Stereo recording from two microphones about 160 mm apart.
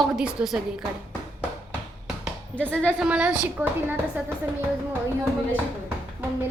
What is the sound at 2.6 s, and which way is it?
Speech, 10° left (ahead or behind).